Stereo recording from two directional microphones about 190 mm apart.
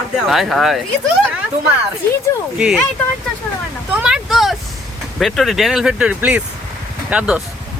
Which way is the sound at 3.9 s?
5° right (ahead or behind).